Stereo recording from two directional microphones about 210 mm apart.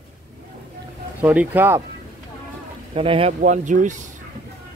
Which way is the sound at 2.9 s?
25° right (ahead or behind).